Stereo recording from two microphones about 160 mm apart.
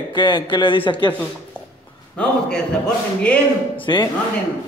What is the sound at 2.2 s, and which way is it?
A man's voice, 5° left (ahead or behind).